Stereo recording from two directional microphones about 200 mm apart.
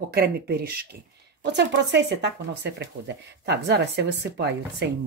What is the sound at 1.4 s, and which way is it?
Speech, 60° right (ahead or behind).